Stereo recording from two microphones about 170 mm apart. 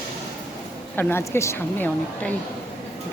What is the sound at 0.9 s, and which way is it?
Speech, 15° left (ahead or behind).